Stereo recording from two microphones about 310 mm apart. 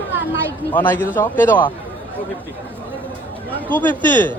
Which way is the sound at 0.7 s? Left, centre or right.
Centre.